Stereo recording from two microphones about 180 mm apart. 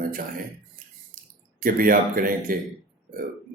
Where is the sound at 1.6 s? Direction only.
50° right (ahead or behind).